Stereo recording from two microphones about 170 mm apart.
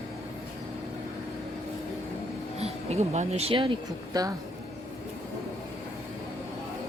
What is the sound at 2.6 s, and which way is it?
Speech, 40° right (ahead or behind).